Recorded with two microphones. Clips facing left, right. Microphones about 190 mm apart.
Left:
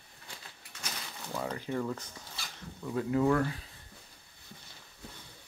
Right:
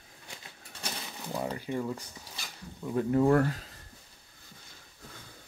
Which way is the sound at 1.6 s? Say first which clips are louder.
Right 1 dB; 15° right (ahead or behind).